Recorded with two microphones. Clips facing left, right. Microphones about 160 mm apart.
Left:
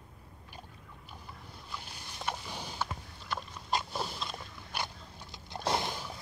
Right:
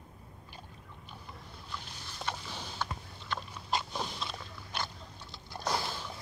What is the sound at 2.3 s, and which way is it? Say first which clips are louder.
Creak: left 2 dB; 10° left (ahead or behind).